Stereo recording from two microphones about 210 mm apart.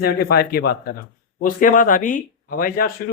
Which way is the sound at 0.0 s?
45° left (ahead or behind).